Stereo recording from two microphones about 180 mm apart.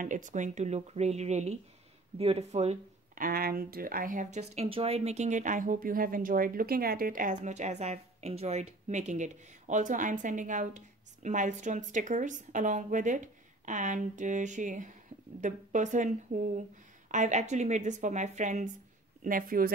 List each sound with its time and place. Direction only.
0.0 s speech: 45° right (ahead or behind)
3.3 s speech: 55° right (ahead or behind)